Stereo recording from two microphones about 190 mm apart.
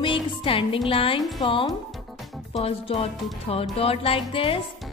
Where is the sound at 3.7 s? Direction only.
30° left (ahead or behind).